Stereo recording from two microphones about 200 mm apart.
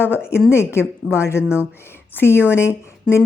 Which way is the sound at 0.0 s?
10° left (ahead or behind).